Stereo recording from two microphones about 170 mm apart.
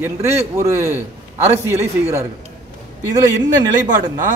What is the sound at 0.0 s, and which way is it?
A man's voice, 15° right (ahead or behind).